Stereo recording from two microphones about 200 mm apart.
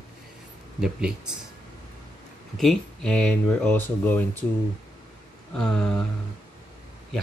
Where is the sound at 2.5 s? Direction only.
Centre (ahead or behind).